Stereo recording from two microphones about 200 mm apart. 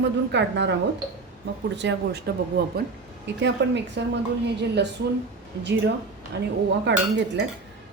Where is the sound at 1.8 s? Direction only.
60° right (ahead or behind).